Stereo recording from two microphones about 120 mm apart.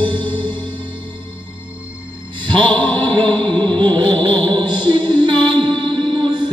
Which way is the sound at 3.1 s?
40° right (ahead or behind).